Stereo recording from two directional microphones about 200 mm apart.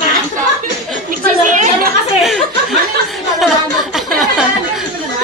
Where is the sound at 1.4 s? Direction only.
40° right (ahead or behind).